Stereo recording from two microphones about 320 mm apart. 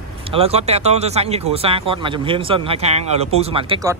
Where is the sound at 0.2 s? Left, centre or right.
Centre.